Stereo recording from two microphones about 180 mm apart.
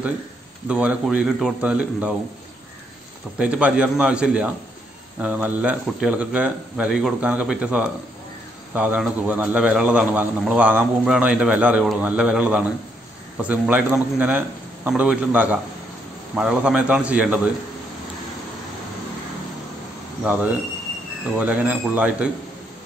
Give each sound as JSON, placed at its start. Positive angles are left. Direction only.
{"t": 0.7, "sound": "a man's voice", "side_deg": -5}
{"t": 3.3, "sound": "a man's voice", "side_deg": -5}
{"t": 21.4, "sound": "a man's voice", "side_deg": -10}